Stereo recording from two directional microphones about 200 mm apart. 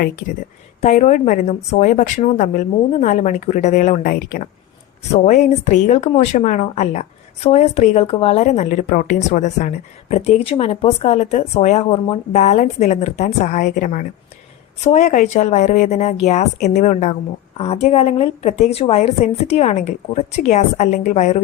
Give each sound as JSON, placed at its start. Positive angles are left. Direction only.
{"t": 0.8, "sound": "speech", "side_deg": 35}